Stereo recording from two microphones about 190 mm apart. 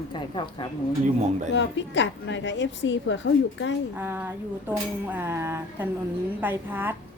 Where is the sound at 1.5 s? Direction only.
70° left (ahead or behind).